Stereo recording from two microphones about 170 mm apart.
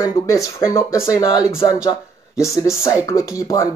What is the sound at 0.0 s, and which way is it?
Speech, 20° left (ahead or behind).